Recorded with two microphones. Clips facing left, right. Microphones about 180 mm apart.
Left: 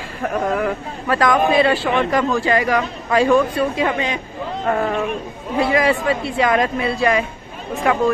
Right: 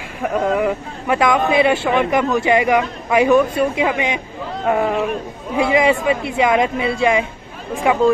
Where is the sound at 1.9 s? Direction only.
10° right (ahead or behind).